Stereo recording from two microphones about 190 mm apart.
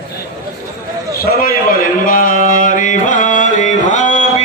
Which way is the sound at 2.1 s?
45° left (ahead or behind).